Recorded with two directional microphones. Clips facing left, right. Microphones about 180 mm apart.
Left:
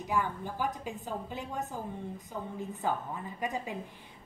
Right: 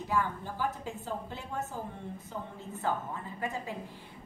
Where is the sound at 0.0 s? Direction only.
15° left (ahead or behind).